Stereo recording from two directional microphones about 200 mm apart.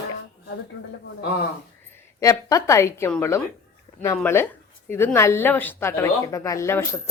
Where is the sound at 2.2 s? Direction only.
15° left (ahead or behind).